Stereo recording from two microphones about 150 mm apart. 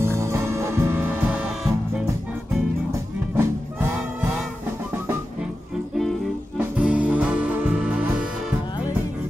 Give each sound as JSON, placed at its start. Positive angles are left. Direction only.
{"t": 0.0, "sound": "music", "side_deg": -20}
{"t": 3.3, "sound": "music", "side_deg": -15}
{"t": 6.6, "sound": "music", "side_deg": -10}